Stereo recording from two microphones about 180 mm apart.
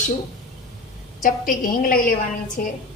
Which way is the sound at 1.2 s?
50° left (ahead or behind).